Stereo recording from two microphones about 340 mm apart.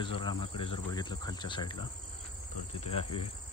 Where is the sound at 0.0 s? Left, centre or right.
Centre.